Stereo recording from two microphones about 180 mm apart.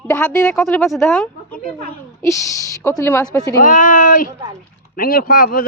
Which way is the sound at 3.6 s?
45° left (ahead or behind).